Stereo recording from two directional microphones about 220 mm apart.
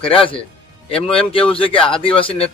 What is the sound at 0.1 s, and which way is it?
Speech, 25° left (ahead or behind).